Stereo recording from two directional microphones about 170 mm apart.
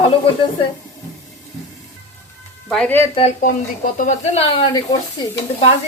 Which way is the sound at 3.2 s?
40° left (ahead or behind).